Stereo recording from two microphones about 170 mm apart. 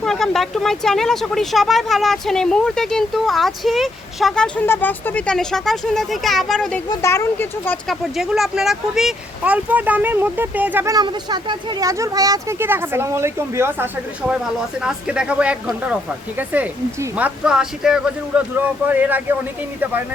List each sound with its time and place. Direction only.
0.0 s speech: centre (ahead or behind)
6.8 s speech: 20° left (ahead or behind)
7.9 s speech: centre (ahead or behind)